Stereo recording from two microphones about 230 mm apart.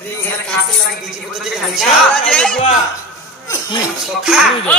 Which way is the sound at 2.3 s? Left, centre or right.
Centre.